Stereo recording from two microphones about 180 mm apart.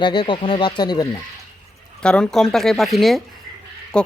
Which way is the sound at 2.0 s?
5° left (ahead or behind).